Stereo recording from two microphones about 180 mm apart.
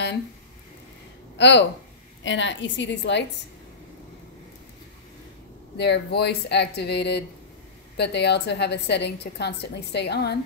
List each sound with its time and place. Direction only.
1.4 s speech: 75° left (ahead or behind)
2.2 s a woman's voice: 90° left
5.8 s a woman's voice: 65° left (ahead or behind)